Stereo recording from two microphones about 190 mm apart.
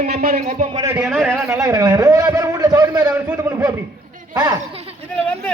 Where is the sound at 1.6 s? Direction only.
20° right (ahead or behind).